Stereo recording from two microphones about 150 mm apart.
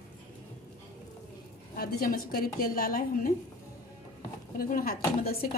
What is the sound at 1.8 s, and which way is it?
A woman's voice, 80° left.